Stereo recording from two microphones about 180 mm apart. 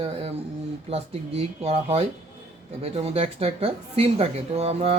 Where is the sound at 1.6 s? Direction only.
35° right (ahead or behind).